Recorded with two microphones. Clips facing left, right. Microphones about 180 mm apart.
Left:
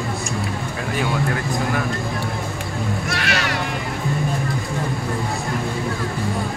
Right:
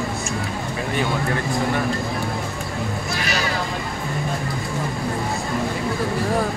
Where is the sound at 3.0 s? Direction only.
80° left.